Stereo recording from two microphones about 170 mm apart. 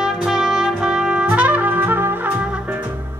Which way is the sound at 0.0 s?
5° right (ahead or behind).